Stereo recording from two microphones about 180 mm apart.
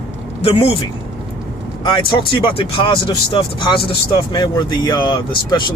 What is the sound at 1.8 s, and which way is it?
Speech, 25° left (ahead or behind).